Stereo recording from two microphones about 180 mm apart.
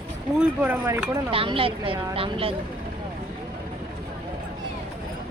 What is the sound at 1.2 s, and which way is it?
Speech, 30° right (ahead or behind).